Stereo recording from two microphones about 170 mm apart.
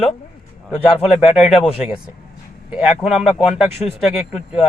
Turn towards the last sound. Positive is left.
turn(degrees=40)  # may be behind; listen again after turning